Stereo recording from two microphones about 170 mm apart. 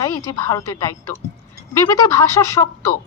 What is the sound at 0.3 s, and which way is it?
A woman's voice, 20° left (ahead or behind).